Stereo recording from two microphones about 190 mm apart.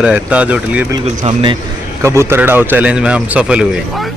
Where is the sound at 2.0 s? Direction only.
15° right (ahead or behind).